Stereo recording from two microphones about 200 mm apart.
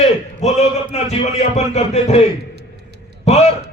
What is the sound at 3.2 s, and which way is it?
Speech, 35° left (ahead or behind).